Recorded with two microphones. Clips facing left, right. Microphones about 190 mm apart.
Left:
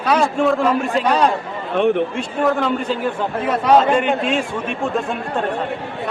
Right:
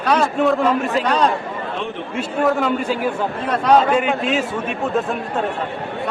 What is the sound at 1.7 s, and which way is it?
Speech, 60° left (ahead or behind).